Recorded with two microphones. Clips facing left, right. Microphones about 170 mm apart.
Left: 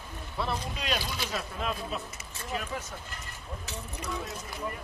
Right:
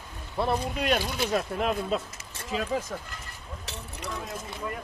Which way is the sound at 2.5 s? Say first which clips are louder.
Right 6 dB; 90° right.